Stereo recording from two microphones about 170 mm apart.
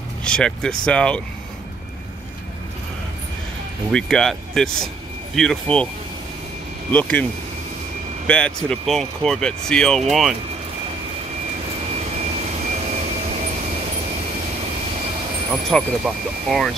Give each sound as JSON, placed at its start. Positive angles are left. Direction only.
{"t": 0.2, "sound": "speech", "side_deg": 5}
{"t": 3.9, "sound": "speech", "side_deg": 0}
{"t": 6.9, "sound": "speech", "side_deg": 10}
{"t": 8.3, "sound": "speech", "side_deg": 5}
{"t": 11.9, "sound": "vehicle", "side_deg": -40}
{"t": 15.5, "sound": "speech", "side_deg": 0}